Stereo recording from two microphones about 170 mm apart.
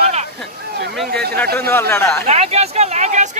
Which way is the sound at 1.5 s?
15° left (ahead or behind).